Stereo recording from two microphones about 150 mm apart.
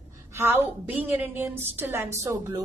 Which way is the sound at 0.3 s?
15° right (ahead or behind).